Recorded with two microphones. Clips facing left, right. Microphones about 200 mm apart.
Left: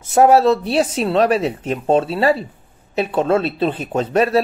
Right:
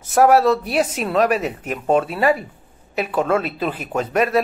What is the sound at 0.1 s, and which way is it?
Speech, 25° left (ahead or behind).